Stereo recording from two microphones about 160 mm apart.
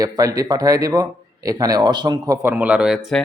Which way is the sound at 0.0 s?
20° right (ahead or behind).